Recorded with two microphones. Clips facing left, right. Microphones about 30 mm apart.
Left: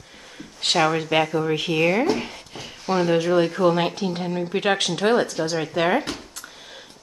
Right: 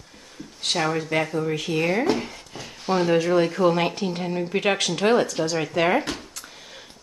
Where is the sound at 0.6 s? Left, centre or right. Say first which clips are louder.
Left 4 dB; left.